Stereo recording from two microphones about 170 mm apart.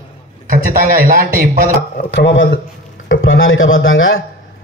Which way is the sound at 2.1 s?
90° left.